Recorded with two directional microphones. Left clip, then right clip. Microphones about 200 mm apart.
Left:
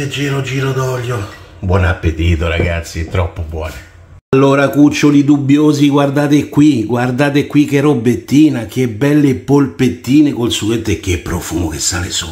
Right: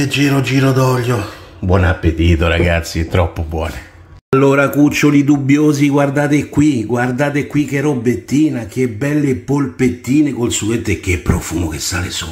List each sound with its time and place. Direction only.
0.1 s speech: 50° right (ahead or behind)
1.7 s speech: 30° right (ahead or behind)
4.3 s speech: centre (ahead or behind)